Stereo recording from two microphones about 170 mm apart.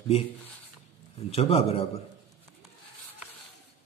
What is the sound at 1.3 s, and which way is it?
Speech, 35° left (ahead or behind).